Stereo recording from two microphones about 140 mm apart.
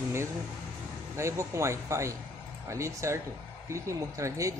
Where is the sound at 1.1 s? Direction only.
20° right (ahead or behind).